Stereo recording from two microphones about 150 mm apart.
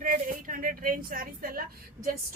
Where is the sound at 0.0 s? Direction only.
60° right (ahead or behind).